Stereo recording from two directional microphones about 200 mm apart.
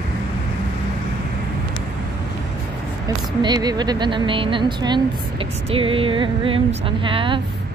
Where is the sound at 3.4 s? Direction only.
20° right (ahead or behind).